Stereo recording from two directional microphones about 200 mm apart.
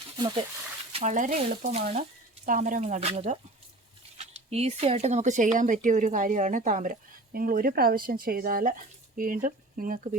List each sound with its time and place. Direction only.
0.9 s speech: 35° right (ahead or behind)